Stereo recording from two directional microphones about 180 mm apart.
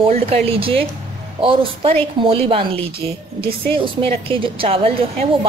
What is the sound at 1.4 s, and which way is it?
Speech, 30° right (ahead or behind).